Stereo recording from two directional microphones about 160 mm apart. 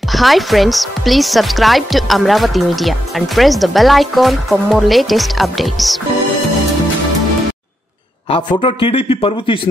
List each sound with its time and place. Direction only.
0.1 s speech: centre (ahead or behind)
8.3 s a man's voice: 30° left (ahead or behind)